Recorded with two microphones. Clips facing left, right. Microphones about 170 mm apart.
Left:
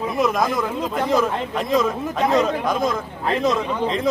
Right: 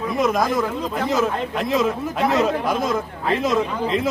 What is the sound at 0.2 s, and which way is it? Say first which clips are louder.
Speech: even; centre (ahead or behind).